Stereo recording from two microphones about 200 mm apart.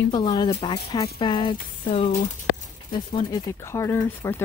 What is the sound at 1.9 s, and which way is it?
Speech, 40° left (ahead or behind).